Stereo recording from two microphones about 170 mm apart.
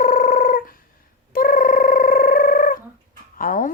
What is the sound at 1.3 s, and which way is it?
Cat, 55° left (ahead or behind).